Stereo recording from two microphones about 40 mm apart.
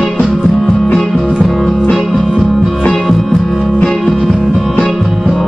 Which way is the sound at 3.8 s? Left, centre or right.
Centre.